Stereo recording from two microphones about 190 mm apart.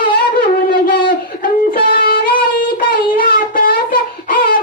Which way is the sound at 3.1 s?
50° left (ahead or behind).